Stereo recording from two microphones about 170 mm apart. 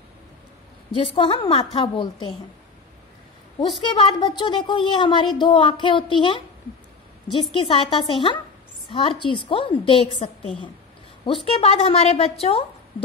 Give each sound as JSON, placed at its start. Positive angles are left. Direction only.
{"t": 0.9, "sound": "a woman's voice", "side_deg": 30}
{"t": 3.8, "sound": "a woman's voice", "side_deg": 25}
{"t": 7.6, "sound": "a woman's voice", "side_deg": 30}